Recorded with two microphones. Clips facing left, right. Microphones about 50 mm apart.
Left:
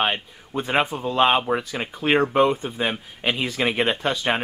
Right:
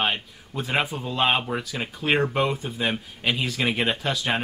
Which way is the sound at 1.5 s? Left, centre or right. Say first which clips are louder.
Left 4 dB; centre.